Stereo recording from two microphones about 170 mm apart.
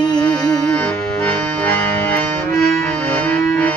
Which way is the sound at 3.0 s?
10° left (ahead or behind).